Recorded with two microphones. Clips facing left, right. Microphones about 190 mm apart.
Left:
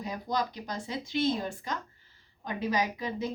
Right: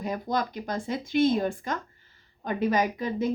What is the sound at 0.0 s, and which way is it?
A woman's voice, 50° right (ahead or behind).